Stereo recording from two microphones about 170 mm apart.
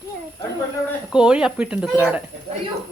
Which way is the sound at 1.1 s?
5° right (ahead or behind).